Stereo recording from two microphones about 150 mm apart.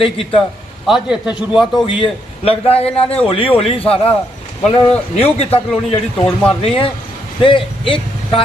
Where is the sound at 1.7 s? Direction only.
35° left (ahead or behind).